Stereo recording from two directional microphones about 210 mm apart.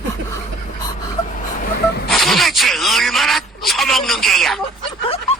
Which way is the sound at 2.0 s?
Centre (ahead or behind).